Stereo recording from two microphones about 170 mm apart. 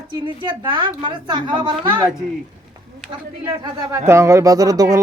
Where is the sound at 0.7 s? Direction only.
30° right (ahead or behind).